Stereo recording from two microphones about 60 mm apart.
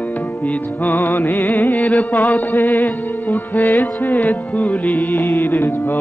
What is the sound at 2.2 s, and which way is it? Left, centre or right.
Music, left.